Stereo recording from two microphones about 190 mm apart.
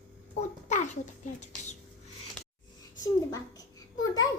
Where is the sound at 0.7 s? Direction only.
40° left (ahead or behind).